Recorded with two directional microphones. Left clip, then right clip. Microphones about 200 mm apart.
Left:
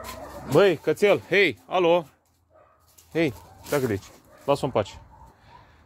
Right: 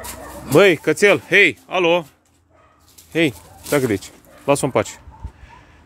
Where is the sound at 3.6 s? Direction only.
15° right (ahead or behind).